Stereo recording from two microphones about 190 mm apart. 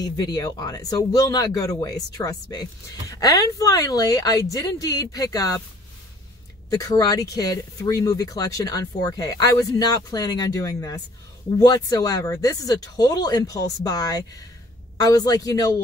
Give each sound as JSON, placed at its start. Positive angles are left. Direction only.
{"t": 0.0, "sound": "speech", "side_deg": 20}
{"t": 6.7, "sound": "speech", "side_deg": 20}